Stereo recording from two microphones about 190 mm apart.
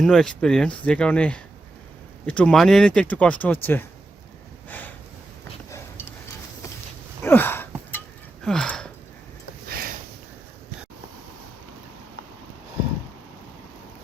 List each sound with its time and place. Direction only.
0.0 s speech: 5° left (ahead or behind)
7.2 s a sound: 10° left (ahead or behind)
9.6 s sniff: 50° right (ahead or behind)